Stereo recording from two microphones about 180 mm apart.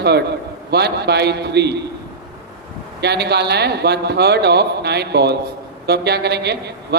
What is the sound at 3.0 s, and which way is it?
A man's voice, 65° right (ahead or behind).